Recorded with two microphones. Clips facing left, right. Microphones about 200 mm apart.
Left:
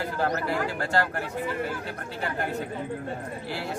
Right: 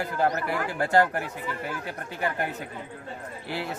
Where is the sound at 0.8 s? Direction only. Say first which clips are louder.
Right 4 dB; 15° right (ahead or behind).